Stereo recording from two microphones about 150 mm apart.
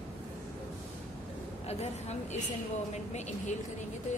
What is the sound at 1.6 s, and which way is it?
Speech, 45° left (ahead or behind).